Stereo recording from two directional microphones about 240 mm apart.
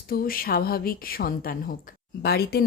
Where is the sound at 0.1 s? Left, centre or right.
Left.